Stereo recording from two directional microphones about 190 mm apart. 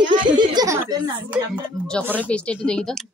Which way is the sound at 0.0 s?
40° right (ahead or behind).